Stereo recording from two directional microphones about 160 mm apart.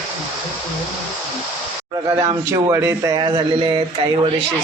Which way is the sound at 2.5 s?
20° right (ahead or behind).